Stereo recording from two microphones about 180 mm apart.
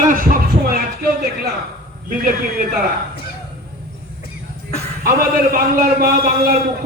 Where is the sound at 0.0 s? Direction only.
50° right (ahead or behind).